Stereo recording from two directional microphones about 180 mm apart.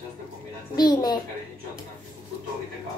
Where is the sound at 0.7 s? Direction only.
20° left (ahead or behind).